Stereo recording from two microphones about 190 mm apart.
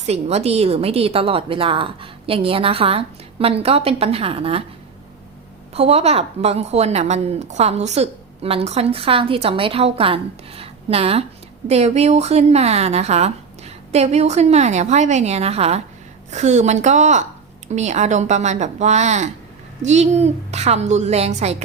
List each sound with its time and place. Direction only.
0.0 s a woman's voice: 35° right (ahead or behind)
5.7 s a woman's voice: 30° right (ahead or behind)